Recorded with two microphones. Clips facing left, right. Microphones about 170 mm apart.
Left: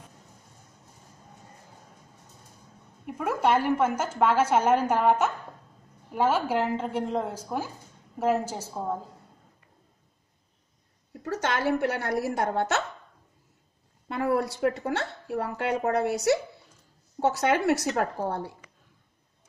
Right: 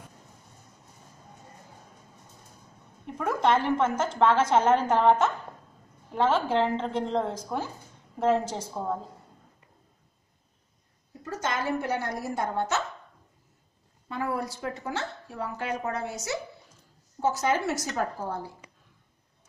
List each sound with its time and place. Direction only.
3.1 s a woman's voice: 10° left (ahead or behind)
11.2 s speech: 70° left (ahead or behind)
14.0 s a woman's voice: 70° left (ahead or behind)